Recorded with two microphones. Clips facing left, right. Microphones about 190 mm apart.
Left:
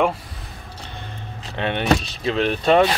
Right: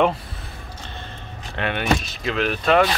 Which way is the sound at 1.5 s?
25° left (ahead or behind).